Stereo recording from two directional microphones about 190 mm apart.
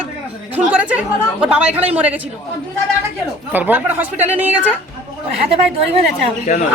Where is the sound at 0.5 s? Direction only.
10° right (ahead or behind).